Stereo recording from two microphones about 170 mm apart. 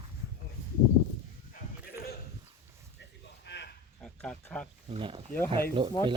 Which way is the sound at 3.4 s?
90° left.